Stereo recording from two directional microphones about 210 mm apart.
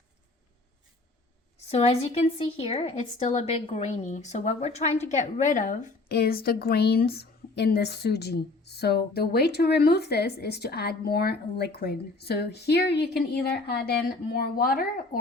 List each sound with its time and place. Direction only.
1.6 s a woman's voice: 30° left (ahead or behind)